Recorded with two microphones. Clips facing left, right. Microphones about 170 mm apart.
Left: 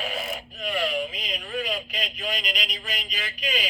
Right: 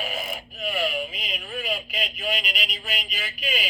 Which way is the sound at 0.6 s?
5° right (ahead or behind).